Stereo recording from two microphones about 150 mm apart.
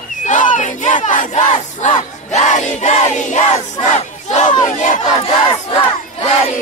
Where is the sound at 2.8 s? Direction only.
55° left (ahead or behind).